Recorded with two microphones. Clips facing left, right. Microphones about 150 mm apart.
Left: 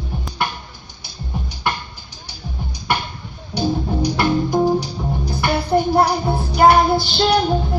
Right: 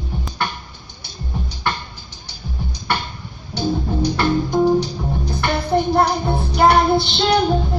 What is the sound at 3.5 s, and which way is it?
Music, 15° left (ahead or behind).